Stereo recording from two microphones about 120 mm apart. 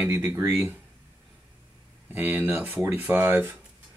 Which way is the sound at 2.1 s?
15° right (ahead or behind).